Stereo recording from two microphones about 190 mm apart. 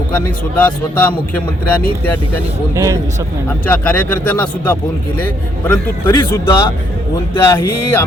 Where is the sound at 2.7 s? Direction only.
15° right (ahead or behind).